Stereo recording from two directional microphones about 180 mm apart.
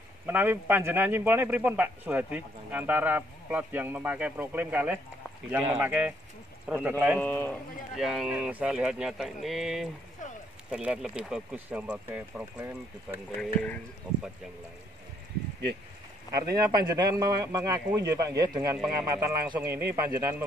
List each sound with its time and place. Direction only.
0.3 s a man's voice: 10° right (ahead or behind)
7.2 s speech: 10° left (ahead or behind)
8.0 s a man's voice: centre (ahead or behind)
13.4 s speech: 5° left (ahead or behind)
16.3 s a man's voice: 20° right (ahead or behind)